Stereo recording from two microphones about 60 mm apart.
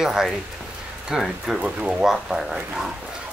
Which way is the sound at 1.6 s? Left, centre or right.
Centre.